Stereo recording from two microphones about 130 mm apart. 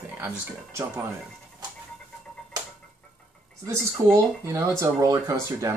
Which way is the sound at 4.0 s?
20° right (ahead or behind).